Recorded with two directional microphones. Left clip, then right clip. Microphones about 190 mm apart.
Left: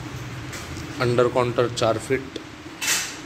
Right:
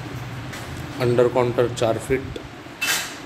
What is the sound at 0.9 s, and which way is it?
A man's voice, 5° right (ahead or behind).